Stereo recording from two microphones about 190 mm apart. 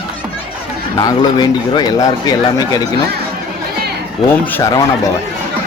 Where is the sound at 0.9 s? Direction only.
20° left (ahead or behind).